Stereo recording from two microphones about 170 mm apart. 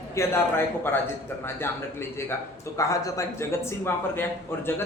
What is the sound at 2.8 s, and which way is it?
A man's voice, 20° left (ahead or behind).